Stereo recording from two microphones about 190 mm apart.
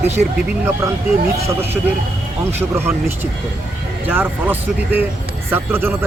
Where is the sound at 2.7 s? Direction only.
10° right (ahead or behind).